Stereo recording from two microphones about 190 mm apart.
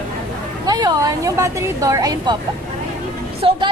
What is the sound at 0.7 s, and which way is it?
A woman's voice, 20° right (ahead or behind).